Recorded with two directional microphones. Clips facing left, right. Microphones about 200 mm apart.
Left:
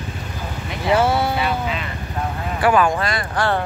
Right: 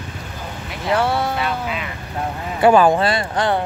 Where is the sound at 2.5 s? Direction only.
25° right (ahead or behind).